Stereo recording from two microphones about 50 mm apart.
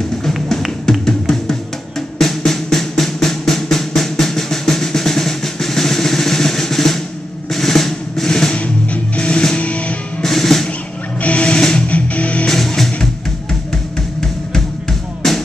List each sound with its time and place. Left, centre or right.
1.0 s music: centre
7.5 s drum roll: centre
8.5 s music: left
10.2 s music: centre
11.1 s music: left
12.4 s music: centre
15.2 s music: centre